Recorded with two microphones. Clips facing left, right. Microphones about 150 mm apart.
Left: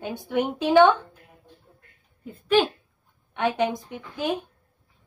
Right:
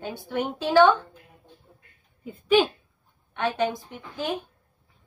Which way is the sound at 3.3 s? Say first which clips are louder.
Left 2 dB; 15° left (ahead or behind).